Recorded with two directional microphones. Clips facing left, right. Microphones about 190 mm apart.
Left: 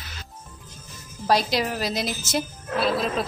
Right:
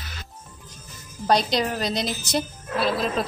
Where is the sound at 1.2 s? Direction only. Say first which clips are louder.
Right 1 dB; 5° left (ahead or behind).